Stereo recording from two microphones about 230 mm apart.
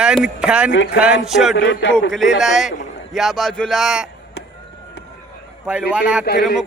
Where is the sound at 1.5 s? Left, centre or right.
Left.